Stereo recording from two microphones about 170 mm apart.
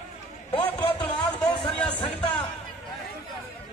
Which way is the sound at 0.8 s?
30° left (ahead or behind).